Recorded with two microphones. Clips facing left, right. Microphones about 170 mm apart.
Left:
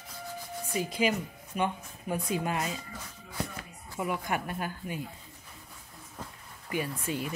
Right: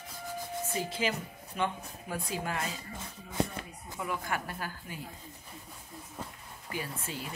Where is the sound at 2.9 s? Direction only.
25° right (ahead or behind).